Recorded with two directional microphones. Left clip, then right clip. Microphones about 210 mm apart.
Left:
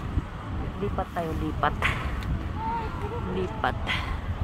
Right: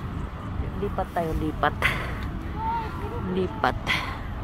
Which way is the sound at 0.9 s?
20° right (ahead or behind).